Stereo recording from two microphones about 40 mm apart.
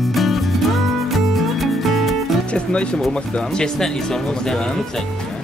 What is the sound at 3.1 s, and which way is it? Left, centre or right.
Speech, centre.